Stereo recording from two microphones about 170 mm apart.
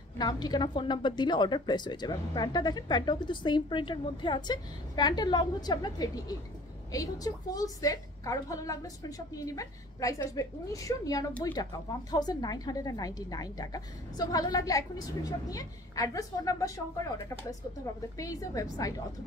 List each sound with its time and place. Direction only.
0.2 s a woman's voice: 25° left (ahead or behind)
18.1 s a woman's voice: 20° left (ahead or behind)